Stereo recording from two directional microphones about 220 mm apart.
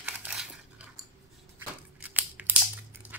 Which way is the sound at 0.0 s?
5° right (ahead or behind).